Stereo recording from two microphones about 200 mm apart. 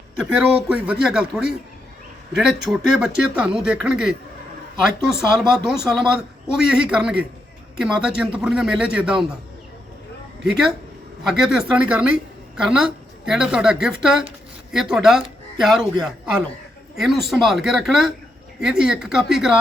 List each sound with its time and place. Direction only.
0.2 s a woman's voice: 5° right (ahead or behind)
10.4 s a woman's voice: centre (ahead or behind)